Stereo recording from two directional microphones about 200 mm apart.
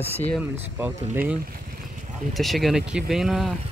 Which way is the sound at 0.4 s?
10° right (ahead or behind).